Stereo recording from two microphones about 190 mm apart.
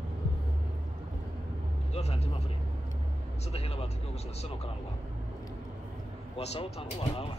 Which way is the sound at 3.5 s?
30° left (ahead or behind).